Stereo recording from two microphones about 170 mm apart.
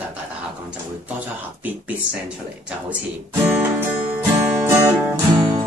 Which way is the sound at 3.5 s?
10° right (ahead or behind).